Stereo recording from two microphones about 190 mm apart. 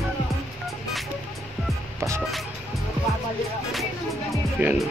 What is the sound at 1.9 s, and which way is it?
Music, 15° right (ahead or behind).